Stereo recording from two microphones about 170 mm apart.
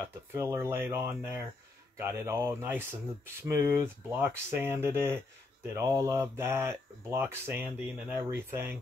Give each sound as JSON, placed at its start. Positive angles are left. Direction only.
{"t": 0.3, "sound": "speech", "side_deg": -15}